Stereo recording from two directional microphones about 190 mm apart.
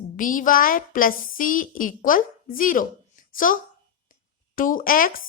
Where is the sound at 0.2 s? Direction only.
45° left (ahead or behind).